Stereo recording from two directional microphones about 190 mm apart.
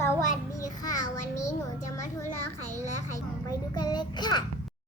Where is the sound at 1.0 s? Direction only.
40° left (ahead or behind).